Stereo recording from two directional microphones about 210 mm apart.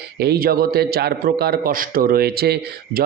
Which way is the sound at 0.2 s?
50° right (ahead or behind).